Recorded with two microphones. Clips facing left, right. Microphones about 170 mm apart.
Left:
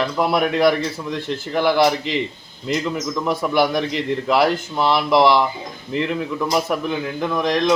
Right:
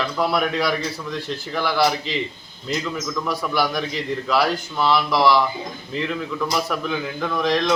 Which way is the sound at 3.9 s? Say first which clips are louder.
Left 4 dB; 60° left (ahead or behind).